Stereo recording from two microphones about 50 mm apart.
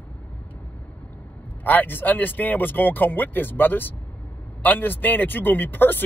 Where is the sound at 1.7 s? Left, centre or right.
Left.